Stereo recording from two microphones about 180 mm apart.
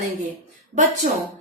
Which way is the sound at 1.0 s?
45° right (ahead or behind).